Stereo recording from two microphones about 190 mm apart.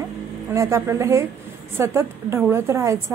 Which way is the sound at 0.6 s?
15° right (ahead or behind).